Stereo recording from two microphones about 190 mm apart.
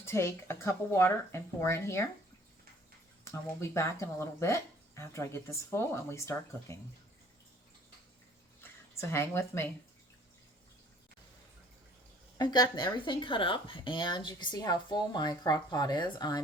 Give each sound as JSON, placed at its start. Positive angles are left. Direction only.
{"t": 0.0, "sound": "speech", "side_deg": 15}
{"t": 3.2, "sound": "speech", "side_deg": 15}
{"t": 8.6, "sound": "speech", "side_deg": 15}
{"t": 12.4, "sound": "speech", "side_deg": 20}